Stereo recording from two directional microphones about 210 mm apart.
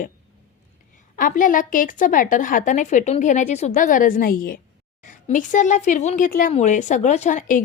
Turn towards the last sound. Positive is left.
turn(degrees=40)  # may be behind; listen again after turning